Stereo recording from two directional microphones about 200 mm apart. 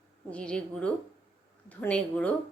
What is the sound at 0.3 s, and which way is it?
Speech, 5° left (ahead or behind).